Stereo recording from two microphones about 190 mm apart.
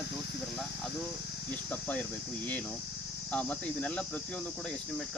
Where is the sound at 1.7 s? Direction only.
5° left (ahead or behind).